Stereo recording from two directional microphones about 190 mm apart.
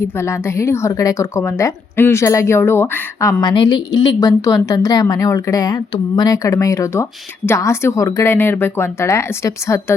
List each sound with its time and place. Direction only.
0.0 s a woman's voice: 10° left (ahead or behind)